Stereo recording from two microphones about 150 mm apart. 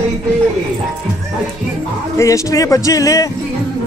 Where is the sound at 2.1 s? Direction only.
20° left (ahead or behind).